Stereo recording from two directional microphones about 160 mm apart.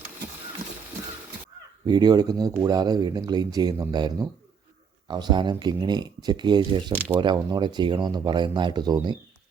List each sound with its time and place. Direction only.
1.9 s speech: 25° right (ahead or behind)
6.9 s speech: 10° left (ahead or behind)
7.2 s speech: 30° right (ahead or behind)